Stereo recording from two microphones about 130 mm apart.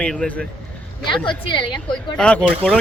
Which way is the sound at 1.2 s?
40° left (ahead or behind).